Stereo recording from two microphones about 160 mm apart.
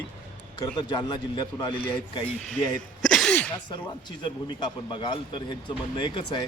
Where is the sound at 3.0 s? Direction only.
5° left (ahead or behind).